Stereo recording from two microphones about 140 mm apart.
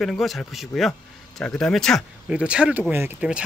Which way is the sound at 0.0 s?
Centre (ahead or behind).